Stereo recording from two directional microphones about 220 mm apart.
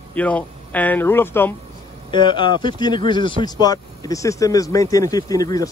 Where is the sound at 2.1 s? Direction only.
20° left (ahead or behind).